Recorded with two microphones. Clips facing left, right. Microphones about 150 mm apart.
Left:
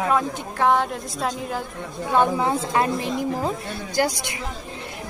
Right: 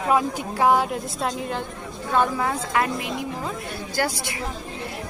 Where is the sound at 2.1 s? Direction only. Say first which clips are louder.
Left 2 dB; 20° left (ahead or behind).